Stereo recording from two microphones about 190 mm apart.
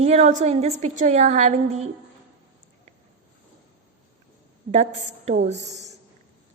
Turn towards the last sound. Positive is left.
turn(degrees=-35)  # may be behind; listen again after turning